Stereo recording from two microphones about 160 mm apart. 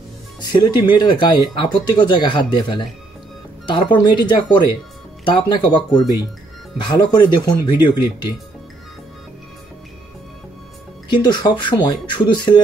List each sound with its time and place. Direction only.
0.5 s speech: 30° left (ahead or behind)
11.1 s speech: 25° left (ahead or behind)